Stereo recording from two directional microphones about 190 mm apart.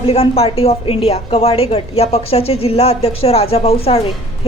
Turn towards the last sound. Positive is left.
turn(degrees=30)  # may be behind; listen again after turning